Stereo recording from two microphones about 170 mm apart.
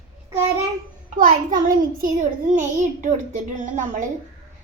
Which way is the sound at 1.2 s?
55° right (ahead or behind).